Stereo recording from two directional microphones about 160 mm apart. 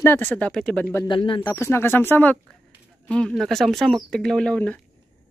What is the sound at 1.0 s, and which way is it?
Speech, 30° left (ahead or behind).